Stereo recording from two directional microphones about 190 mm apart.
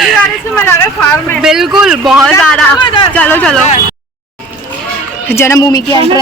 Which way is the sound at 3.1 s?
5° left (ahead or behind).